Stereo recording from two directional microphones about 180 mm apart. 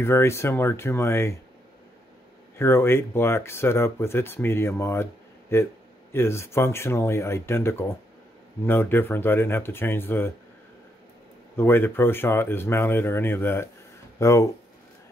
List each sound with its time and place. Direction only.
0.0 s speech: 15° left (ahead or behind)
2.6 s speech: 15° left (ahead or behind)
11.5 s speech: 15° left (ahead or behind)